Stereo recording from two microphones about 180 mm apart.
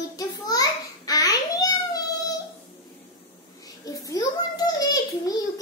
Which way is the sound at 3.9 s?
20° left (ahead or behind).